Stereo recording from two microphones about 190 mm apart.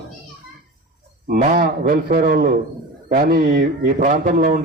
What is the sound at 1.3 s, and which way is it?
A man's voice, 45° right (ahead or behind).